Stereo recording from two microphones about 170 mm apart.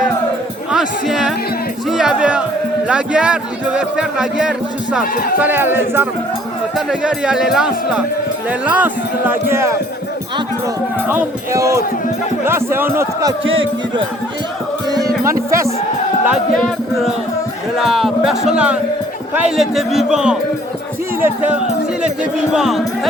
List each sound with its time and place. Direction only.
0.7 s speech: centre (ahead or behind)
11.1 s speech: 15° right (ahead or behind)
14.8 s music: 20° right (ahead or behind)
15.4 s speech: 15° right (ahead or behind)
16.2 s speech: centre (ahead or behind)